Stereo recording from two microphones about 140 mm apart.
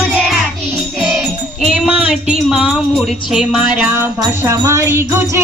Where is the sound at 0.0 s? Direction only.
10° right (ahead or behind).